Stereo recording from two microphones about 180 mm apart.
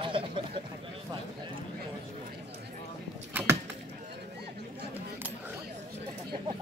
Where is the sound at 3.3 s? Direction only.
10° right (ahead or behind).